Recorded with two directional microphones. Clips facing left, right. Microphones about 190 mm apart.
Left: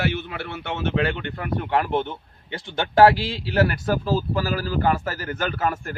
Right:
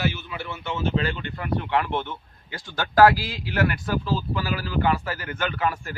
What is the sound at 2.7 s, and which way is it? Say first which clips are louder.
Speech: left 2 dB; 25° left (ahead or behind).